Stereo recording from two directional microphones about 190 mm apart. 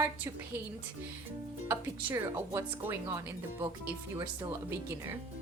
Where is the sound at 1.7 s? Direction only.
15° right (ahead or behind).